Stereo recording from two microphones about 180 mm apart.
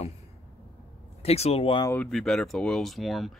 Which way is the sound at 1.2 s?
35° left (ahead or behind).